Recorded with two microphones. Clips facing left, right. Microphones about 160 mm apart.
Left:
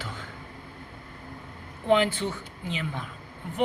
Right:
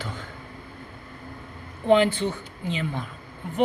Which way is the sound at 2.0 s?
5° left (ahead or behind).